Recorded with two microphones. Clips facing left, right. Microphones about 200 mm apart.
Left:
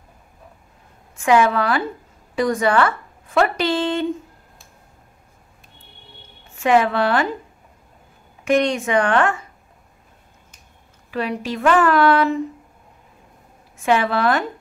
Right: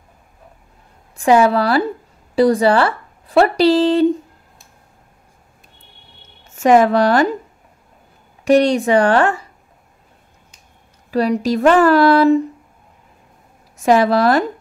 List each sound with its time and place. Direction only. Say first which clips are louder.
1.1 s a woman's voice: right 4 dB; 35° right (ahead or behind)
6.4 s a woman's voice: right 5 dB; 45° right (ahead or behind)
8.5 s speech: right 6 dB; 35° right (ahead or behind)
11.1 s speech: right 8 dB; 40° right (ahead or behind)
13.7 s speech: right 6 dB; 40° right (ahead or behind)